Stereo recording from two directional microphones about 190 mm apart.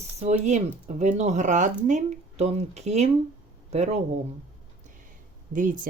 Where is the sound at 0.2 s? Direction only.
35° right (ahead or behind).